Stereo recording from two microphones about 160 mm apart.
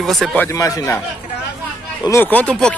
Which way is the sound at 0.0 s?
Centre (ahead or behind).